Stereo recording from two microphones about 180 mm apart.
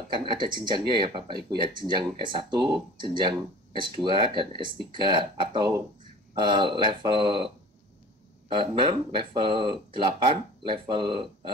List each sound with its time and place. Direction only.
0.1 s speech: 25° right (ahead or behind)
8.5 s speech: 25° right (ahead or behind)